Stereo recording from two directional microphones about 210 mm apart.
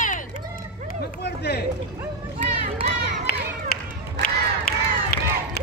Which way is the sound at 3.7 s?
45° left (ahead or behind).